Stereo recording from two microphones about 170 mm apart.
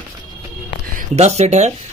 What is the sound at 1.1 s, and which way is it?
Speech, 40° right (ahead or behind).